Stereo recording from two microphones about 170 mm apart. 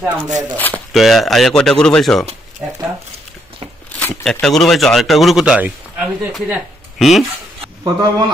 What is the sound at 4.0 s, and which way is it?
Speech, 5° left (ahead or behind).